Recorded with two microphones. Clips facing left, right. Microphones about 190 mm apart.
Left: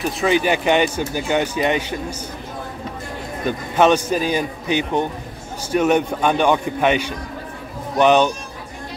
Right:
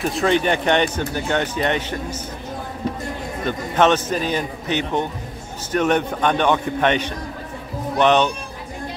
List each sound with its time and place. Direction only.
0.0 s speech: centre (ahead or behind)
3.4 s speech: 10° left (ahead or behind)